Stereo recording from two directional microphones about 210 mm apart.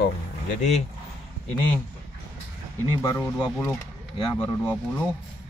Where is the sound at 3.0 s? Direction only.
10° left (ahead or behind).